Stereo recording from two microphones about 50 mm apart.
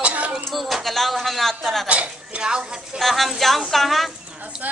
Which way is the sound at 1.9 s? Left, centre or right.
Right.